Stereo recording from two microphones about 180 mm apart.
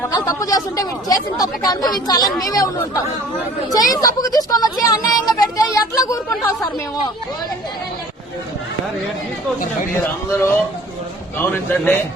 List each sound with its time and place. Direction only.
0.3 s a woman's voice: 15° left (ahead or behind)
10.0 s speech: 15° left (ahead or behind)
11.5 s speech: 10° left (ahead or behind)